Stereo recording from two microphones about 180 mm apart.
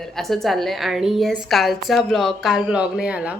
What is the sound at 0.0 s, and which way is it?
A woman's voice, centre (ahead or behind).